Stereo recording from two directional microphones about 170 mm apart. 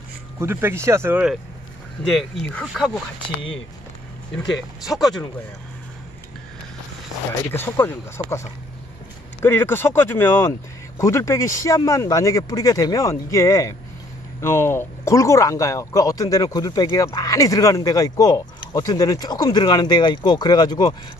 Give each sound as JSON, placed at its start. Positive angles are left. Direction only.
{"t": 0.4, "sound": "speech", "side_deg": -15}
{"t": 4.8, "sound": "speech", "side_deg": 0}
{"t": 7.5, "sound": "speech", "side_deg": 15}